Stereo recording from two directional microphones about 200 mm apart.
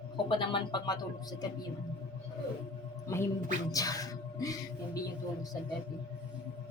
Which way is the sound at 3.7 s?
15° left (ahead or behind).